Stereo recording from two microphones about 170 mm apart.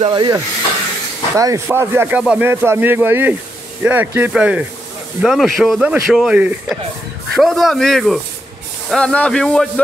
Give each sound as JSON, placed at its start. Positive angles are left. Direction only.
{"t": 0.0, "sound": "speech", "side_deg": -25}